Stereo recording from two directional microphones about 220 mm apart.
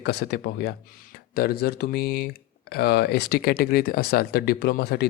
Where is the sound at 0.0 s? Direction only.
50° left (ahead or behind).